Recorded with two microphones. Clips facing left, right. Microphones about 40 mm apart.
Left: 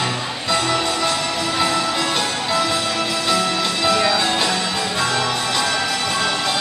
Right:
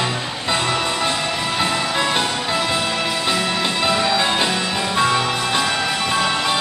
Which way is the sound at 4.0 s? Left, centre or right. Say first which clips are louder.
Even; centre.